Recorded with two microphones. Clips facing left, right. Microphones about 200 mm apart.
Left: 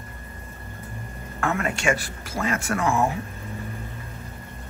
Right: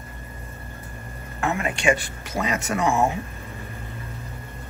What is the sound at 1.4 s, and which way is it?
Speech, 20° right (ahead or behind).